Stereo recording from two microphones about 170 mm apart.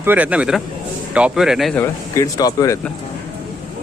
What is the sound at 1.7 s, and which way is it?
Speech, 15° left (ahead or behind).